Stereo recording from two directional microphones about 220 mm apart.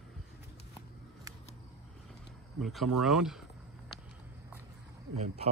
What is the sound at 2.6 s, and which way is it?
Speech, centre (ahead or behind).